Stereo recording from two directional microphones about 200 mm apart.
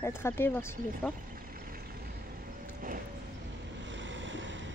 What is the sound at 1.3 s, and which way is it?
Vehicle, 45° right (ahead or behind).